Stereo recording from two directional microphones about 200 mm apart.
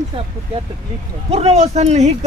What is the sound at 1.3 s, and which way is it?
Speech, 30° right (ahead or behind).